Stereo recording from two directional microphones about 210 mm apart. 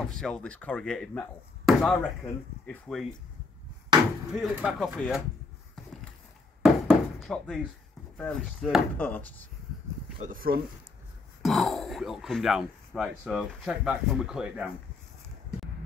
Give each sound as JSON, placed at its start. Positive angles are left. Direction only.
{"t": 0.1, "sound": "speech", "side_deg": 5}
{"t": 4.3, "sound": "speech", "side_deg": -5}
{"t": 6.6, "sound": "a sound", "side_deg": 0}
{"t": 8.2, "sound": "speech", "side_deg": 5}
{"t": 10.2, "sound": "speech", "side_deg": -45}
{"t": 11.4, "sound": "speech", "side_deg": 0}